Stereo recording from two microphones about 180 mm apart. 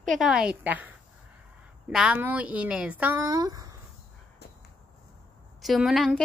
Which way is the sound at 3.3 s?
20° right (ahead or behind).